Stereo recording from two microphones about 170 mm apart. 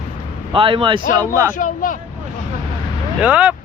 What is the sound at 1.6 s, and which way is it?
Speech, 50° left (ahead or behind).